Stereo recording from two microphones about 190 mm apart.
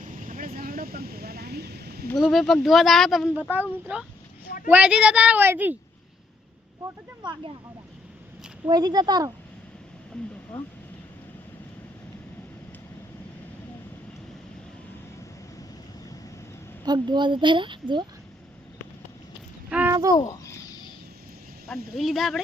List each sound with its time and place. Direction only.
0.0 s vehicle: 45° right (ahead or behind)
2.0 s a child's voice: centre (ahead or behind)
4.4 s a sound: 50° left (ahead or behind)
4.7 s a child's voice: 10° right (ahead or behind)
6.8 s a woman's voice: 25° right (ahead or behind)
8.6 s a woman's voice: 20° right (ahead or behind)
16.8 s a woman's voice: 25° right (ahead or behind)
19.7 s a sound: 10° right (ahead or behind)
20.1 s a sound: 15° left (ahead or behind)
21.9 s speech: centre (ahead or behind)